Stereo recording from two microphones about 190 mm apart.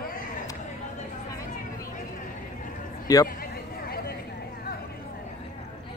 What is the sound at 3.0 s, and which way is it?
Speech, 20° left (ahead or behind).